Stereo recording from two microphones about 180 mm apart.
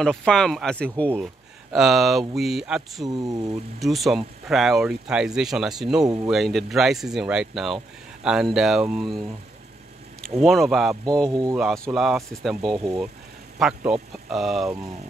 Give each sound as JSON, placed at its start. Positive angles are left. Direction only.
{"t": 0.0, "sound": "speech", "side_deg": 5}
{"t": 3.1, "sound": "speech", "side_deg": -20}
{"t": 3.8, "sound": "speech", "side_deg": 0}
{"t": 10.4, "sound": "speech", "side_deg": 0}
{"t": 11.2, "sound": "speech", "side_deg": -20}
{"t": 11.5, "sound": "speech", "side_deg": 0}
{"t": 12.7, "sound": "speech", "side_deg": -20}
{"t": 13.6, "sound": "speech", "side_deg": -5}